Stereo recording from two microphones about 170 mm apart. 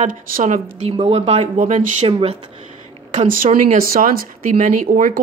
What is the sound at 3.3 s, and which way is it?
Speech, 50° right (ahead or behind).